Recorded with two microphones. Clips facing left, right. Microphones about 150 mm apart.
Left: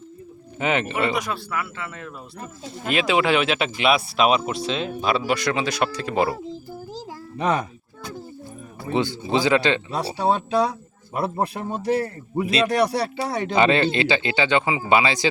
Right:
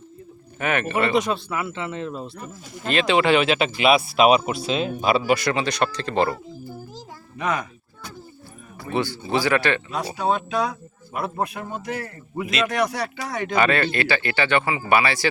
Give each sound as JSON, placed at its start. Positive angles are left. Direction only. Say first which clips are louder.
{"t": 0.6, "sound": "speech", "louder": "even", "side_deg": 20}
{"t": 1.1, "sound": "speech", "louder": "right 4 dB", "side_deg": -20}
{"t": 2.8, "sound": "speech", "louder": "right 1 dB", "side_deg": 10}
{"t": 6.9, "sound": "music", "louder": "left 5 dB", "side_deg": 30}
{"t": 8.9, "sound": "speech", "louder": "left 1 dB", "side_deg": 20}
{"t": 9.9, "sound": "speech", "louder": "left 1 dB", "side_deg": 30}